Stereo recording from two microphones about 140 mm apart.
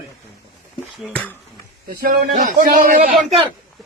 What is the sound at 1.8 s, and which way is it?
Speech, 90° right.